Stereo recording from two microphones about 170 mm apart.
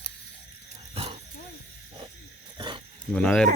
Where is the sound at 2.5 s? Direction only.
25° right (ahead or behind).